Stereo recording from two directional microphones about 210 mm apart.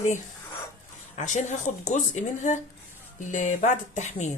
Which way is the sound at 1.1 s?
35° left (ahead or behind).